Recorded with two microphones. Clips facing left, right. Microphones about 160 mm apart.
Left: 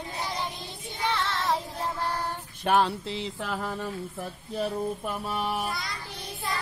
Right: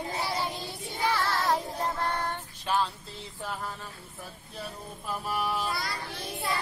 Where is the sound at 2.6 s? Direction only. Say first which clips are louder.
Left 5 dB; 65° left (ahead or behind).